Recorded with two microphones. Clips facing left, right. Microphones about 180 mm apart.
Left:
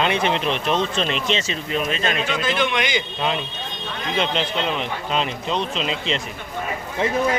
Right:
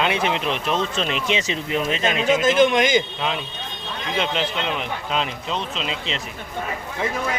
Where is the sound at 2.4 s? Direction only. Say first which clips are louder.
Right 6 dB; 45° right (ahead or behind).